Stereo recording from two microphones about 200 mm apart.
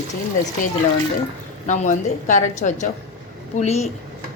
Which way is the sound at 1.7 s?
40° left (ahead or behind).